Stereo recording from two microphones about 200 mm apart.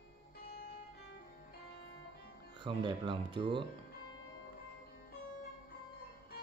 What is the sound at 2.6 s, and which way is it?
Speech, 25° right (ahead or behind).